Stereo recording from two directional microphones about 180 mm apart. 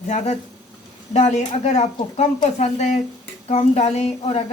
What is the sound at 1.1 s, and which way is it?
Speech, 40° left (ahead or behind).